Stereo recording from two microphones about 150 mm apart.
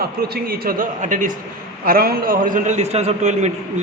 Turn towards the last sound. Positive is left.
turn(degrees=-50)  # may be behind; listen again after turning